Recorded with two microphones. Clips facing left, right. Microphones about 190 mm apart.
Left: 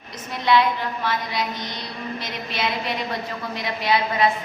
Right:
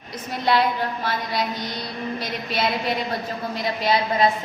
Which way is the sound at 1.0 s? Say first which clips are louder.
Left 2 dB; 35° right (ahead or behind).